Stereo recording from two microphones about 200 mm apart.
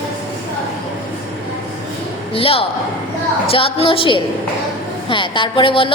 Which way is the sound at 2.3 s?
30° left (ahead or behind).